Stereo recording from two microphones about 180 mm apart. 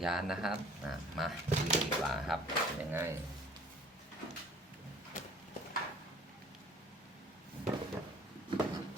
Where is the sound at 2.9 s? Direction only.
15° right (ahead or behind).